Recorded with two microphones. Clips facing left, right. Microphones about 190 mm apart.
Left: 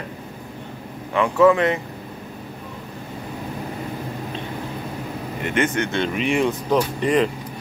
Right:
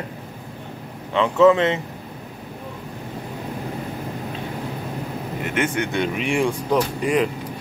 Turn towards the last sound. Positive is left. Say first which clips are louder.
# left 1 dB
turn(degrees=-5)  # may be behind; listen again after turning